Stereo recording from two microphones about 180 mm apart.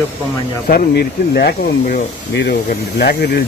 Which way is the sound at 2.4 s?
75° left (ahead or behind).